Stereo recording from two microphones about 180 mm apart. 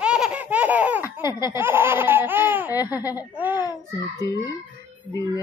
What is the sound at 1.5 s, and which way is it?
Laughter, 10° right (ahead or behind).